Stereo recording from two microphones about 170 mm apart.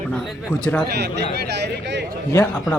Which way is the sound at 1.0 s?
75° right (ahead or behind).